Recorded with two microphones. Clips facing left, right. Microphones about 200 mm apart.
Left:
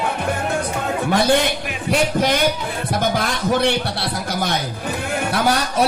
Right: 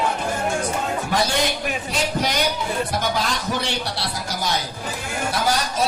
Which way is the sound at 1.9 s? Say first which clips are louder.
Left 8 dB; 55° left (ahead or behind).